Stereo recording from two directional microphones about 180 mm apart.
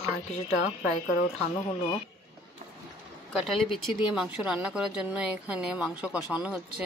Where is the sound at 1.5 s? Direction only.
20° left (ahead or behind).